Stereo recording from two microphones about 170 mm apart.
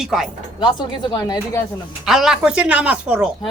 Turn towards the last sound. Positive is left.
turn(degrees=-5)  # may be behind; listen again after turning